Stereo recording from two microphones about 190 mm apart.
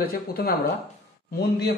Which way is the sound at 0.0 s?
55° left (ahead or behind).